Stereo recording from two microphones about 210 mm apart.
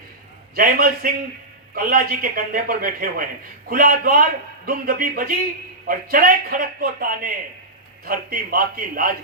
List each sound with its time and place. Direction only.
0.5 s a man's voice: 45° right (ahead or behind)